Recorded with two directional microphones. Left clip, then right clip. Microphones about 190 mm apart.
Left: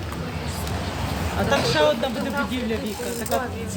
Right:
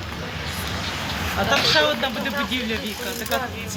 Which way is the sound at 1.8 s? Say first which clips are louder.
Even; 10° right (ahead or behind).